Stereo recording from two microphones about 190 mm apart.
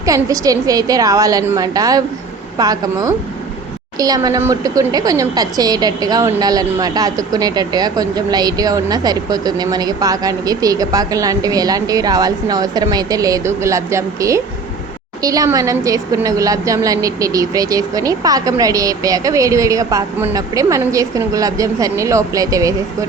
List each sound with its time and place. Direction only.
0.0 s a woman's voice: 15° right (ahead or behind)